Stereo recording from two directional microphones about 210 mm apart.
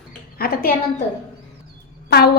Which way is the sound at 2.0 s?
50° left (ahead or behind).